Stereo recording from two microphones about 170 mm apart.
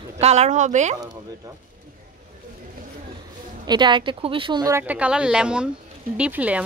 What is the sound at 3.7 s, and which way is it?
Speech, 25° right (ahead or behind).